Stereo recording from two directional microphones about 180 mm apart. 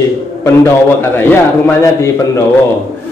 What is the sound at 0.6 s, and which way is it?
Speech, 10° left (ahead or behind).